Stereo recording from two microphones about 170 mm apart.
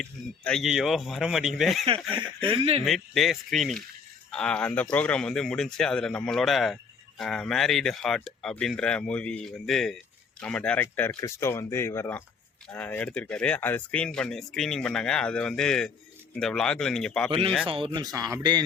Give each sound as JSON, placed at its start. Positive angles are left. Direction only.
{"t": 0.0, "sound": "speech", "side_deg": 5}
{"t": 2.0, "sound": "speech", "side_deg": -30}
{"t": 2.8, "sound": "speech", "side_deg": 0}
{"t": 17.7, "sound": "speech", "side_deg": -30}